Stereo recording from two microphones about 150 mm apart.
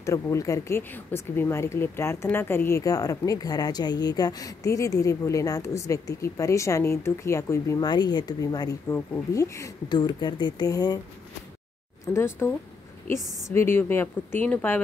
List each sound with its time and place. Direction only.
0.0 s speech: 20° left (ahead or behind)
12.1 s a woman's voice: 15° left (ahead or behind)